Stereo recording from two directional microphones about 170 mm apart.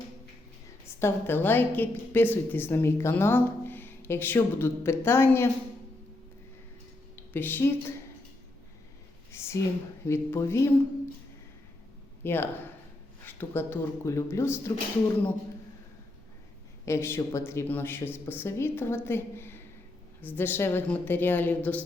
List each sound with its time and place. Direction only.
0.9 s a woman's voice: 15° left (ahead or behind)
7.3 s a woman's voice: 10° left (ahead or behind)
9.3 s a sound: 15° left (ahead or behind)
10.1 s a woman's voice: 15° left (ahead or behind)
12.2 s a woman's voice: 15° left (ahead or behind)
16.8 s a woman's voice: 15° left (ahead or behind)